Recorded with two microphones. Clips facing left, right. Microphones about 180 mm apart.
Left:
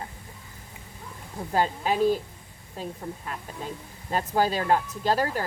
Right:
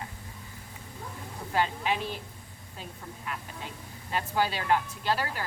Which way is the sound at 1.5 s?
40° left (ahead or behind).